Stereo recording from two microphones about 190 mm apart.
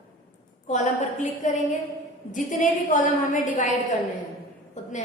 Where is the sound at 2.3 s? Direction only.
40° left (ahead or behind).